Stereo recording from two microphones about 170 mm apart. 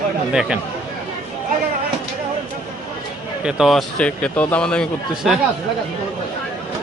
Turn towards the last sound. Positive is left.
turn(degrees=5)  # may be behind; listen again after turning